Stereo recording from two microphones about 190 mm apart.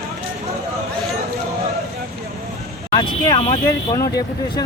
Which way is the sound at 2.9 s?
25° left (ahead or behind).